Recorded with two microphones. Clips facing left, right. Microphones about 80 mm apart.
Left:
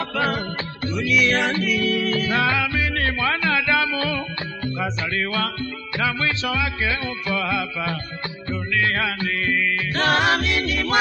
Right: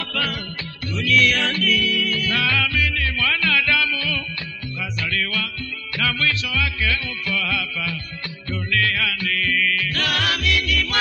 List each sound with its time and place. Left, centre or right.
0.1 s music: left
5.9 s music: left